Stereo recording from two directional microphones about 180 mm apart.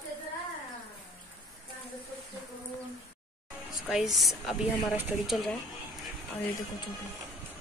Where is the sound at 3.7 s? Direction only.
Centre (ahead or behind).